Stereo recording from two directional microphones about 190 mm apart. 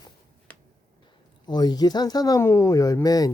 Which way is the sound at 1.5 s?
20° left (ahead or behind).